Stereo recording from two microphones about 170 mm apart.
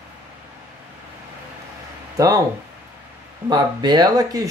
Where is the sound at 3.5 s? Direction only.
25° right (ahead or behind).